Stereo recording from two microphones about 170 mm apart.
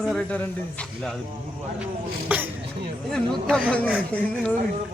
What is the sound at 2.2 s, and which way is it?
Speech, 10° right (ahead or behind).